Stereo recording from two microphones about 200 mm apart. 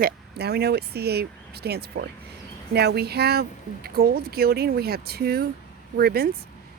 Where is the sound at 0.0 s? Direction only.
55° right (ahead or behind).